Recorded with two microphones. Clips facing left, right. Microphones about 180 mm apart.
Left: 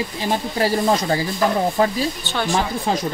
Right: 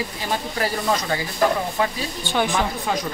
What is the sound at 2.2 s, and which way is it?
Speech, 15° right (ahead or behind).